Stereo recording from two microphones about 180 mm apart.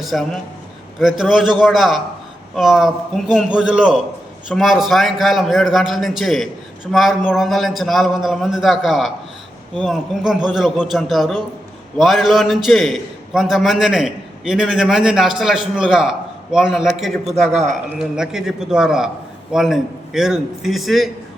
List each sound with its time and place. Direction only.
0.0 s a man's voice: centre (ahead or behind)
17.5 s speech: 40° right (ahead or behind)
18.2 s a man's voice: 5° right (ahead or behind)